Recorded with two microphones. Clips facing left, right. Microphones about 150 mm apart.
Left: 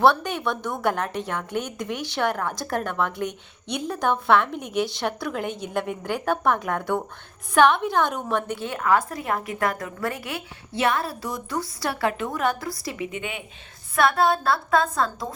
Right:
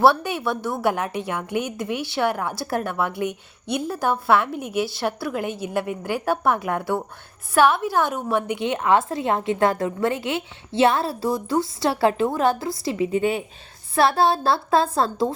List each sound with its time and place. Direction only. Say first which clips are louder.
0.0 s a woman's voice: right 2 dB; 10° right (ahead or behind); by 15.3 s 30° right (ahead or behind)